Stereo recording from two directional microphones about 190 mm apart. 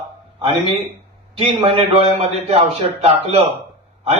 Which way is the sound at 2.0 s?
30° right (ahead or behind).